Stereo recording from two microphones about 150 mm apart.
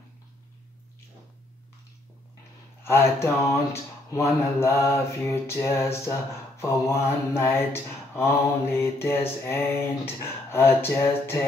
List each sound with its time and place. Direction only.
2.8 s mantra: 15° left (ahead or behind)